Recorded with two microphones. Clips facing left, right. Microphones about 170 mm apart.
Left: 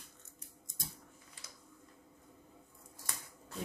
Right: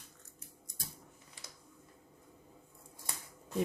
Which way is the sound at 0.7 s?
20° left (ahead or behind).